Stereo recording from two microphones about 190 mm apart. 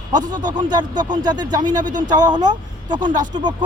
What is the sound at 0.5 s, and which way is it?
Speech, 20° right (ahead or behind).